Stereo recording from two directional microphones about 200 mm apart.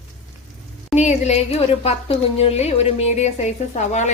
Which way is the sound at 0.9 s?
35° left (ahead or behind).